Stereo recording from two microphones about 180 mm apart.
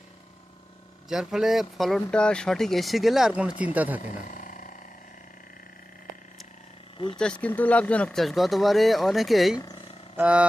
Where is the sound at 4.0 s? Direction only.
45° left (ahead or behind).